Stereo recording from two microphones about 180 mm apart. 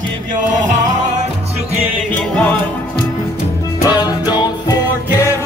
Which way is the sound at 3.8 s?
20° left (ahead or behind).